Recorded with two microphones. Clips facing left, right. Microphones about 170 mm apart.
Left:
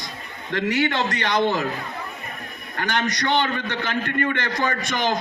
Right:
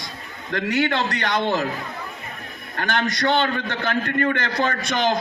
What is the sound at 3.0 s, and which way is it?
Speech, 20° left (ahead or behind).